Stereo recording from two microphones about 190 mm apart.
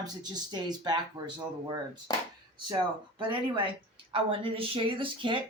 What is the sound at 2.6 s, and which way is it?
Speech, 25° right (ahead or behind).